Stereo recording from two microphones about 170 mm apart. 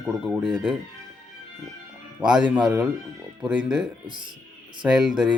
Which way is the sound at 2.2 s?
10° right (ahead or behind).